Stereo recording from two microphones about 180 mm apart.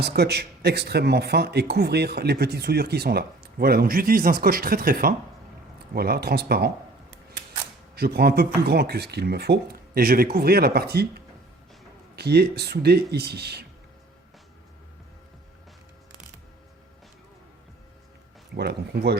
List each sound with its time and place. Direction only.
0.0 s speech: 65° right (ahead or behind)
7.9 s speech: 60° right (ahead or behind)
18.5 s speech: 65° right (ahead or behind)